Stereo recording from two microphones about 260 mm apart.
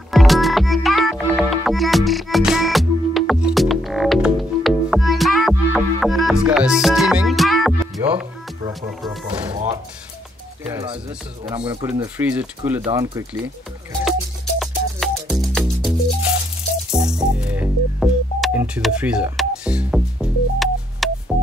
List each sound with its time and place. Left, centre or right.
0.1 s music: centre
8.1 s speech: centre
9.5 s speech: right
10.7 s speech: centre
14.6 s music: centre